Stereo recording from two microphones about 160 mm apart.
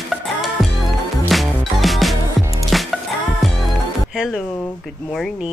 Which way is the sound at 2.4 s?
20° right (ahead or behind).